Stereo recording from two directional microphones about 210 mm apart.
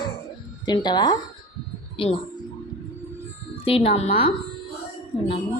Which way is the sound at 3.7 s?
30° left (ahead or behind).